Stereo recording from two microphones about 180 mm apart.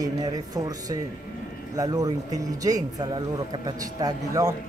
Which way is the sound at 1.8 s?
20° right (ahead or behind).